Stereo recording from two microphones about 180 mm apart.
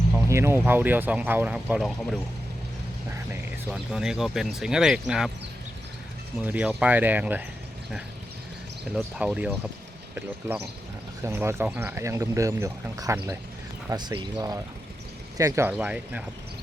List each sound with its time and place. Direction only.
0.3 s speech: 15° right (ahead or behind)
3.7 s speech: 5° right (ahead or behind)
6.4 s speech: 10° right (ahead or behind)
9.0 s speech: 5° right (ahead or behind)
11.2 s speech: 15° right (ahead or behind)
15.8 s speech: 5° right (ahead or behind)